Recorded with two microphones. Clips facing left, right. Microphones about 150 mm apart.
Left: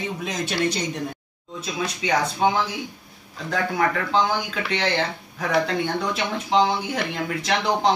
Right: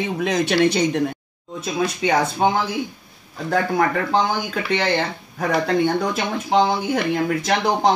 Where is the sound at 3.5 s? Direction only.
45° right (ahead or behind).